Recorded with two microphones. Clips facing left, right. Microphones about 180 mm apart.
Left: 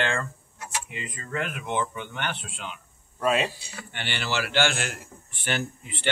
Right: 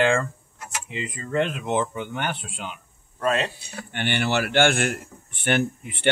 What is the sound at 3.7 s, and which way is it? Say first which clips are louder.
A man's voice: right 8 dB; 50° right (ahead or behind).